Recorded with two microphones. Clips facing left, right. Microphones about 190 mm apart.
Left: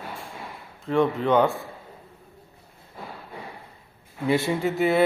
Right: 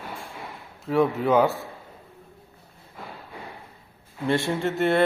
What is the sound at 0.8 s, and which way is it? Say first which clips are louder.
Speech: even; 5° right (ahead or behind).